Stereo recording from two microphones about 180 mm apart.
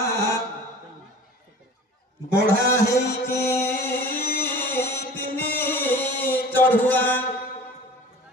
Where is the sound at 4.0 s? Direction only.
60° left (ahead or behind).